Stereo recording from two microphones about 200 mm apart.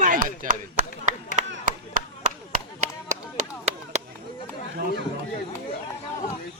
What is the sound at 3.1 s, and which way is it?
Chop, 35° right (ahead or behind).